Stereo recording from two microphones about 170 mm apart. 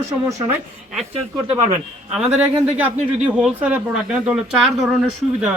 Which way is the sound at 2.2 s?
5° right (ahead or behind).